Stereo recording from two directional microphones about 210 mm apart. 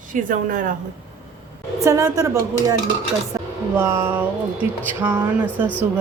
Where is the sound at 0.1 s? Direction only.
40° right (ahead or behind).